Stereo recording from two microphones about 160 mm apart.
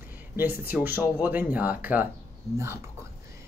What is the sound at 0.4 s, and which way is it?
Speech, 10° right (ahead or behind).